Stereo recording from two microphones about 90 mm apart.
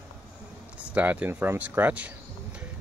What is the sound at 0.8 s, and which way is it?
Speech, 15° right (ahead or behind).